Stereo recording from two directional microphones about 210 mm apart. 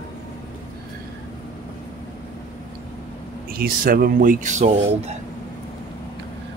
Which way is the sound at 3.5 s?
45° right (ahead or behind).